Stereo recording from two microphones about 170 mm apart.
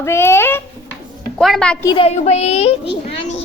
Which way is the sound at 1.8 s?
25° left (ahead or behind).